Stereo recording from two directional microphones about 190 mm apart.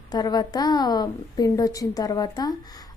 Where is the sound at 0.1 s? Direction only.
20° left (ahead or behind).